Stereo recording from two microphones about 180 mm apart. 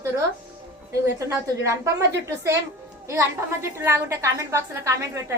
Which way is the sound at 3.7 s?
15° right (ahead or behind).